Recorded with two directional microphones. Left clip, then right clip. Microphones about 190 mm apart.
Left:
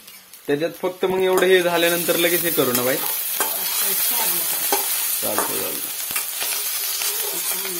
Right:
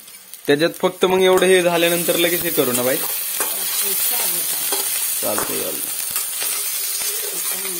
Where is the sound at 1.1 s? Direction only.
25° right (ahead or behind); by 4.1 s 10° right (ahead or behind).